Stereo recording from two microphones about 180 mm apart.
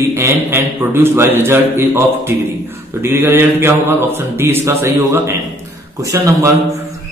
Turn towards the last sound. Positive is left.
turn(degrees=-20)  # may be behind; listen again after turning